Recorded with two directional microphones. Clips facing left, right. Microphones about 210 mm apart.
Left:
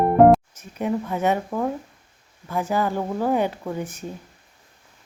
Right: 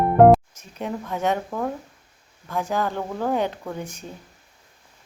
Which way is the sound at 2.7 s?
10° left (ahead or behind).